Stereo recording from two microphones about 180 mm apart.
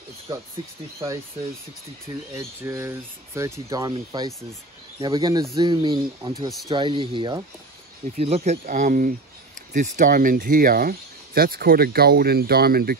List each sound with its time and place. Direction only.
2.3 s speech: 15° right (ahead or behind)
8.2 s speech: 35° right (ahead or behind); by 12.9 s 60° right (ahead or behind)